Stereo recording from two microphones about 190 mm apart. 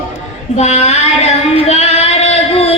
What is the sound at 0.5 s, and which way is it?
Child singing, 35° left (ahead or behind).